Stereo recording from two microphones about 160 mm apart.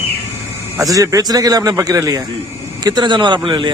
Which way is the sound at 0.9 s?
20° right (ahead or behind).